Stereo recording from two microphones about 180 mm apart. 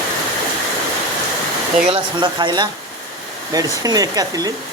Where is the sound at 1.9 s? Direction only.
25° right (ahead or behind).